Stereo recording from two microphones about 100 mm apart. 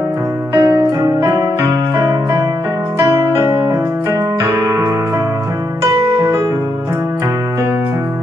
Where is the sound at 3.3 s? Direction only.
30° right (ahead or behind).